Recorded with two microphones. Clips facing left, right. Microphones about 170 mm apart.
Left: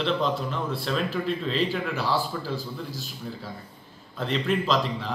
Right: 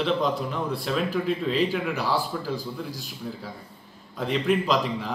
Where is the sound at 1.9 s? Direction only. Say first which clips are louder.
Even; 15° right (ahead or behind).